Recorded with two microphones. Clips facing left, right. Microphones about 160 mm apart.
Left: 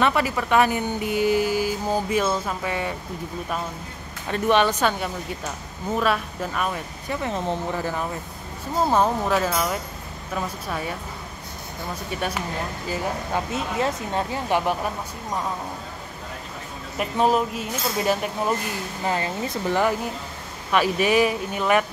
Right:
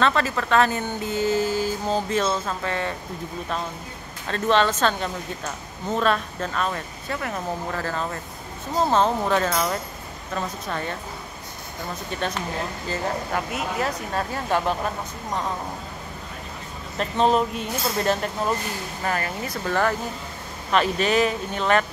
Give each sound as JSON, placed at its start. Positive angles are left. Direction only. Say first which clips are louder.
{"t": 0.0, "sound": "speech", "louder": "even", "side_deg": 10}
{"t": 4.3, "sound": "speech", "louder": "left 1 dB", "side_deg": 15}
{"t": 7.2, "sound": "speech", "louder": "left 3 dB", "side_deg": 25}
{"t": 7.8, "sound": "speech", "louder": "left 1 dB", "side_deg": 15}
{"t": 12.2, "sound": "speech", "louder": "right 1 dB", "side_deg": 10}
{"t": 13.7, "sound": "speech", "louder": "left 3 dB", "side_deg": 25}
{"t": 16.9, "sound": "speech", "louder": "even", "side_deg": 10}
{"t": 19.0, "sound": "speech", "louder": "left 2 dB", "side_deg": 20}